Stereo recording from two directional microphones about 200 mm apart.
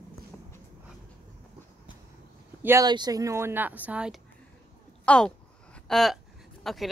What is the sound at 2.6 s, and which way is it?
Speech, 15° right (ahead or behind).